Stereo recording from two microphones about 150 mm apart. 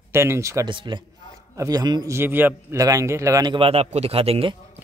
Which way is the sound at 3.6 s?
40° right (ahead or behind).